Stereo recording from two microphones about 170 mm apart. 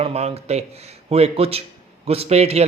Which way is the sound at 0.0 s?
35° right (ahead or behind).